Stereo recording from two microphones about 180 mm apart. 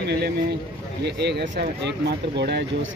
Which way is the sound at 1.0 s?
70° right (ahead or behind).